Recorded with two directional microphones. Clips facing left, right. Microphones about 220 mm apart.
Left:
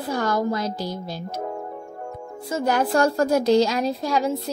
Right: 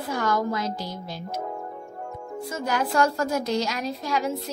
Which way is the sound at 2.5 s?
30° left (ahead or behind).